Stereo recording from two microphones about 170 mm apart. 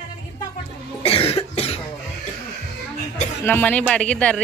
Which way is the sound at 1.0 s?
35° left (ahead or behind).